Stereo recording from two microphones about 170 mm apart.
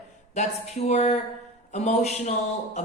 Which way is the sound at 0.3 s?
40° left (ahead or behind).